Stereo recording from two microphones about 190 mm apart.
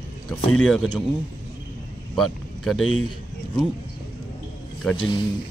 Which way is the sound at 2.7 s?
90° left.